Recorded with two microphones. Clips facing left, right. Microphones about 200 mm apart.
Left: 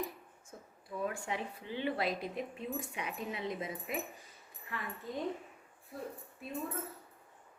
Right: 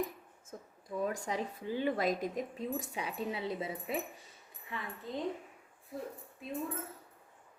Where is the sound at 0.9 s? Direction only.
40° right (ahead or behind).